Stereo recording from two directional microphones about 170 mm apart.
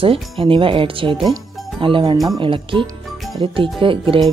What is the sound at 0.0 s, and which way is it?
Speech, 30° right (ahead or behind).